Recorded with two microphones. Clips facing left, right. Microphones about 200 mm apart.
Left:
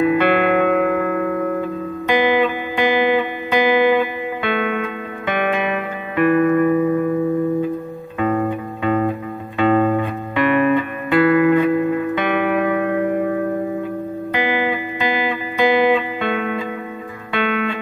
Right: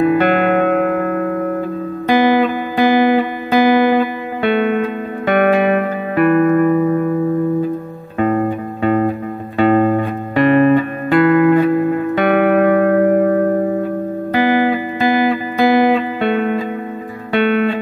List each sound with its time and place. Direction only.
0.0 s music: 40° right (ahead or behind)
8.2 s music: 40° right (ahead or behind)
14.5 s music: 40° right (ahead or behind)